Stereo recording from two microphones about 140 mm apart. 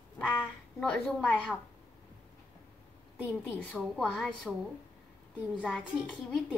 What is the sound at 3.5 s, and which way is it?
A woman's voice, 5° left (ahead or behind).